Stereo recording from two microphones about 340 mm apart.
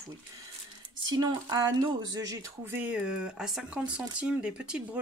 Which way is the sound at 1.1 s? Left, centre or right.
Centre.